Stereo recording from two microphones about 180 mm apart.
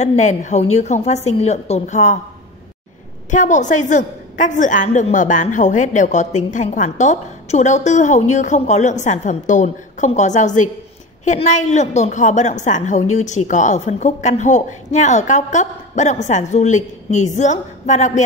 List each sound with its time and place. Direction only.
0.0 s a woman's voice: 40° left (ahead or behind)
3.3 s a woman's voice: 45° left (ahead or behind)